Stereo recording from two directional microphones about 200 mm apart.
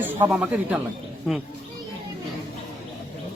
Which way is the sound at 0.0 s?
10° right (ahead or behind).